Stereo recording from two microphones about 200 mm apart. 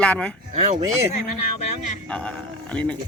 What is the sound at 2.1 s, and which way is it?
Speech, 5° left (ahead or behind).